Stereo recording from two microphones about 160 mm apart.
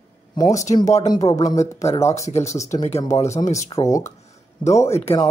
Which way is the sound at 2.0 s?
20° left (ahead or behind).